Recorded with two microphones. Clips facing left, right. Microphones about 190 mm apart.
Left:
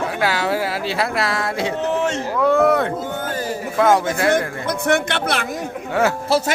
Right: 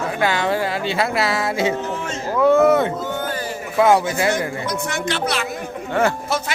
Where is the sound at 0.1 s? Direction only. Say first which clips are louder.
Even; 5° left (ahead or behind).